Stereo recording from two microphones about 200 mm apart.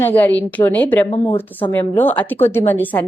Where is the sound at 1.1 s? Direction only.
25° left (ahead or behind).